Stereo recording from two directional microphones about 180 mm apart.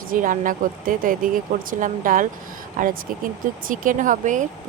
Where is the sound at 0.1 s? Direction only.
50° right (ahead or behind).